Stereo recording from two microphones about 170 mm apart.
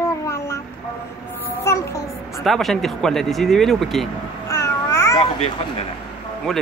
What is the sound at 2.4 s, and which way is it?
Speech, centre (ahead or behind).